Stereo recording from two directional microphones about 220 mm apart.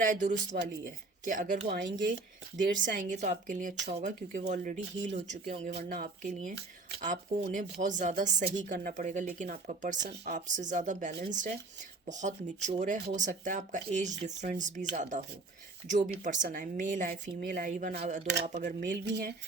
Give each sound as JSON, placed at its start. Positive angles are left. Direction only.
{"t": 0.0, "sound": "a woman's voice", "side_deg": -35}
{"t": 19.0, "sound": "speech", "side_deg": -50}